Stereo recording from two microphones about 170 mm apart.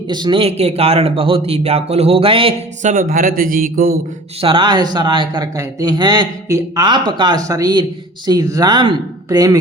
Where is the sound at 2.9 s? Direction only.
55° right (ahead or behind).